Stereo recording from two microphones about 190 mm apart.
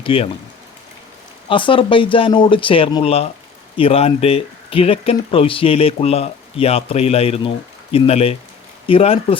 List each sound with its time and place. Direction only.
0.0 s speech: 30° left (ahead or behind)
1.5 s speech: 25° left (ahead or behind)